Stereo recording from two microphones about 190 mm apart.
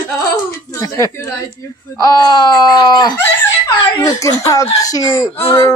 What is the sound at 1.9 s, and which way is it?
Speech, 20° left (ahead or behind).